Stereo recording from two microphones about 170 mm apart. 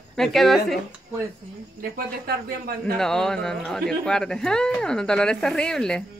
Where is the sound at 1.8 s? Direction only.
60° right (ahead or behind).